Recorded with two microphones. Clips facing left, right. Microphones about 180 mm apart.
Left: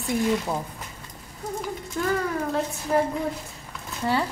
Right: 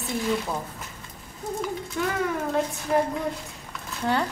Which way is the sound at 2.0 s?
Centre (ahead or behind).